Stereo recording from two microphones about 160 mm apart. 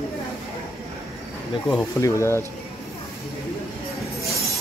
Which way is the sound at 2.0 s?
20° left (ahead or behind).